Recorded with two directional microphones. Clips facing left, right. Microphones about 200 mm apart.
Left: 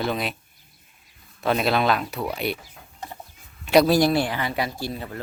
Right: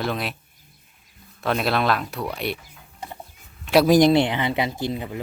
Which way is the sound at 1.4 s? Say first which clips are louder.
Left 1 dB; centre (ahead or behind).